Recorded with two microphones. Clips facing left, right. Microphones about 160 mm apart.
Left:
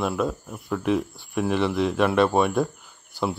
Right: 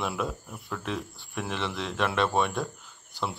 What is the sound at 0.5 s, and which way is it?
Speech, 15° left (ahead or behind).